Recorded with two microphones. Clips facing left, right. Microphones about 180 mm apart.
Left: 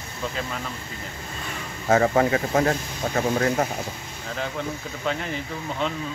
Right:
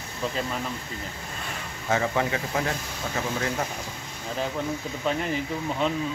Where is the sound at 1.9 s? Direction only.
45° left (ahead or behind).